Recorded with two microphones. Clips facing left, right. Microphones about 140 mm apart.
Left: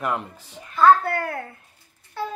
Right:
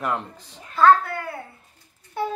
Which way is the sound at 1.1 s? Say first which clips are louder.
Left 5 dB; 80° left.